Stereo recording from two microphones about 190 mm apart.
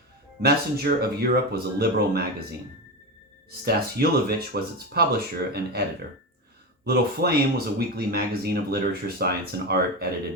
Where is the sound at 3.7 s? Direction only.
55° right (ahead or behind).